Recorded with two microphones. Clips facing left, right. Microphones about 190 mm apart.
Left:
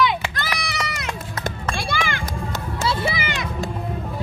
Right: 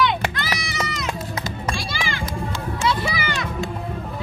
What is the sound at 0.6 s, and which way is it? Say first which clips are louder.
Music: right 1 dB; 60° left (ahead or behind).